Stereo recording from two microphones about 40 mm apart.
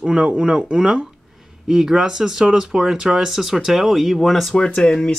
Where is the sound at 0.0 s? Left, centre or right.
Right.